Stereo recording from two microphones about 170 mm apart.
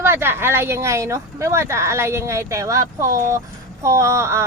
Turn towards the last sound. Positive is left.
turn(degrees=-15)  # may be behind; listen again after turning